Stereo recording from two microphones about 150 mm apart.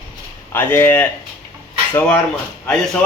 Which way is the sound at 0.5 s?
15° left (ahead or behind).